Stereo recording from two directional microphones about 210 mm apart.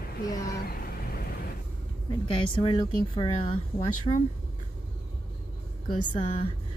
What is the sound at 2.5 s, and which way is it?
Speech, 25° left (ahead or behind).